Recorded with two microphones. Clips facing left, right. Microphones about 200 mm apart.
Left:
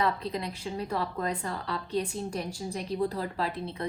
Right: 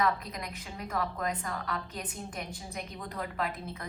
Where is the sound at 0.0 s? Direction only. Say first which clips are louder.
Left 2 dB; 30° left (ahead or behind).